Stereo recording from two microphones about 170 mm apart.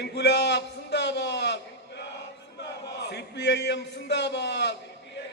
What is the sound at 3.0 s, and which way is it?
A man's voice, 90° left.